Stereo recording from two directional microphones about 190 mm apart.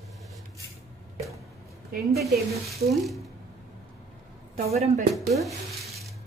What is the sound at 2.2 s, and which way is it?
Speech, centre (ahead or behind).